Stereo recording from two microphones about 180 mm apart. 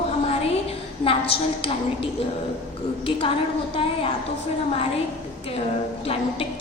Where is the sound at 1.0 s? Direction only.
30° left (ahead or behind).